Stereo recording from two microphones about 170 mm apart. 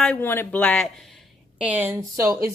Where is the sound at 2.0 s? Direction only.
20° right (ahead or behind).